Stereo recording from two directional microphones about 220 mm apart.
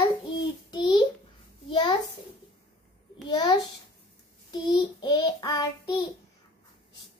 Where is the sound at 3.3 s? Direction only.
20° left (ahead or behind).